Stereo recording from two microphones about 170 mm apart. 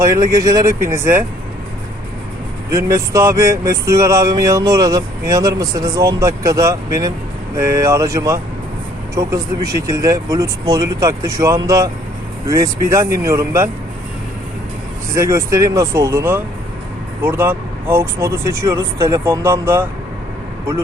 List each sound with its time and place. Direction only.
0.0 s speech: 20° right (ahead or behind)
2.7 s speech: 20° right (ahead or behind)
15.1 s speech: 15° right (ahead or behind)